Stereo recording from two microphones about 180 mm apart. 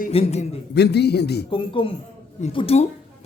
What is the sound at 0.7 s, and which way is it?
Speech, 65° left (ahead or behind).